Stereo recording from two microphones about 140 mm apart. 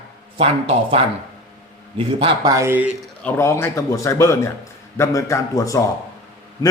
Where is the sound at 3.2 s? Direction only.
15° left (ahead or behind).